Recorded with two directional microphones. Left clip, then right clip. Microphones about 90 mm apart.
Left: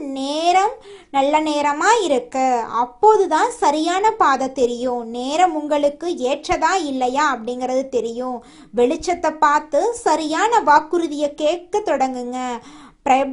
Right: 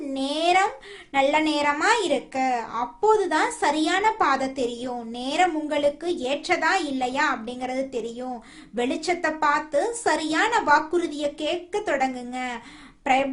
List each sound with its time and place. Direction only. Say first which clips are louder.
0.1 s a sound: left 4 dB; 45° left (ahead or behind)
1.1 s speech: left 4 dB; 40° left (ahead or behind); by 8.3 s 55° left (ahead or behind)
8.7 s speech: left 8 dB; 40° left (ahead or behind)